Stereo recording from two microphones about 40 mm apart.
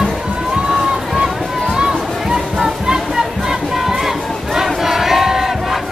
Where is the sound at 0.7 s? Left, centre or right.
Centre.